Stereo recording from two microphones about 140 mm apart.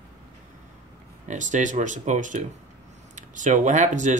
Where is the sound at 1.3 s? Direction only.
60° right (ahead or behind).